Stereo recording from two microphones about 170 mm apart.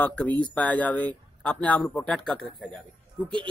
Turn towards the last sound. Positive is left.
turn(degrees=-30)  # may be behind; listen again after turning